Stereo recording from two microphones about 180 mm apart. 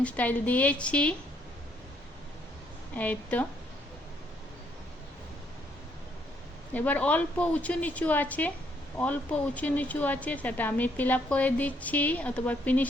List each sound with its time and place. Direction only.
0.0 s speech: 10° left (ahead or behind)
2.9 s speech: 10° left (ahead or behind)
6.7 s speech: 10° left (ahead or behind)